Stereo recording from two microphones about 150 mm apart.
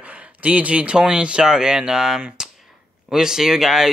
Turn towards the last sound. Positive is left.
turn(degrees=-5)  # may be behind; listen again after turning